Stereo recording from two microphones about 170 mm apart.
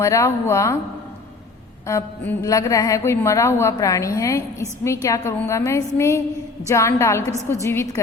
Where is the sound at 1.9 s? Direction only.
15° left (ahead or behind).